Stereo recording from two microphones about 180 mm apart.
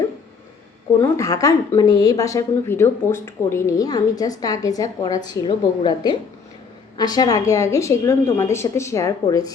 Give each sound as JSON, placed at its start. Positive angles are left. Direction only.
{"t": 1.0, "sound": "a woman's voice", "side_deg": 15}